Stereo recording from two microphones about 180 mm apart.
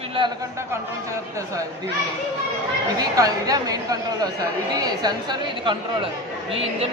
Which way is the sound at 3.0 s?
20° right (ahead or behind).